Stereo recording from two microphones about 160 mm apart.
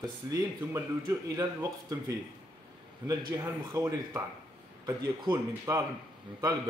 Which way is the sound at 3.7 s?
20° right (ahead or behind).